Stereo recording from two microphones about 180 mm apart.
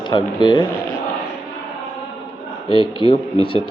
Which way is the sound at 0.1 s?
25° left (ahead or behind).